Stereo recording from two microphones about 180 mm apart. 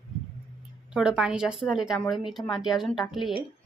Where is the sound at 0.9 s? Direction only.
5° right (ahead or behind).